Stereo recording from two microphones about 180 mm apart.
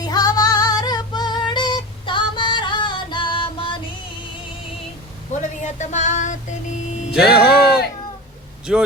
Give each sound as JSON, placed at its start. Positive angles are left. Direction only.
{"t": 0.0, "sound": "female singing", "side_deg": 20}
{"t": 5.4, "sound": "music", "side_deg": 40}
{"t": 7.1, "sound": "music", "side_deg": -5}
{"t": 8.7, "sound": "speech", "side_deg": -5}